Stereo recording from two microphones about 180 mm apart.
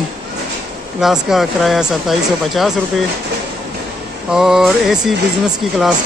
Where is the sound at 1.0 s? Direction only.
Centre (ahead or behind).